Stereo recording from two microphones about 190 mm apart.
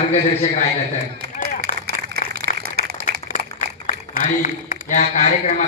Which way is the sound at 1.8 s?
55° right (ahead or behind).